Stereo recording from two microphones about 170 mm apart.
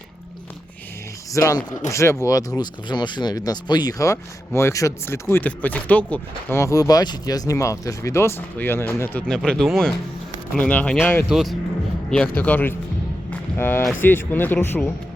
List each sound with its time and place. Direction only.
1.3 s speech: 20° left (ahead or behind)
11.3 s speech: centre (ahead or behind)
13.3 s a sound: 10° left (ahead or behind)
13.9 s speech: 10° left (ahead or behind)